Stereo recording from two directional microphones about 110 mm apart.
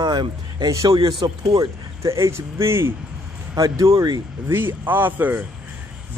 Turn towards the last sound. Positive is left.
turn(degrees=-15)  # may be behind; listen again after turning